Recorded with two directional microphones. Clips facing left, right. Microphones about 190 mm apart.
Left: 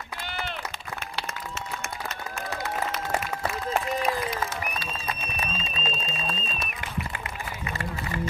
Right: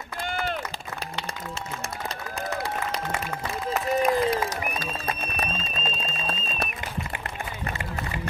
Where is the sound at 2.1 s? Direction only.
35° right (ahead or behind).